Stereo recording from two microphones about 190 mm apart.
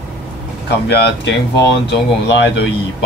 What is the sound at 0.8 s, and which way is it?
Speech, 65° left (ahead or behind).